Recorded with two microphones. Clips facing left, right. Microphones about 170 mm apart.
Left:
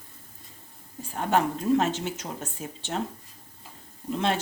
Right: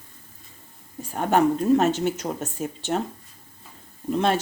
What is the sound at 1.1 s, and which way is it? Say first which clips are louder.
Speech: right 5 dB; 50° right (ahead or behind).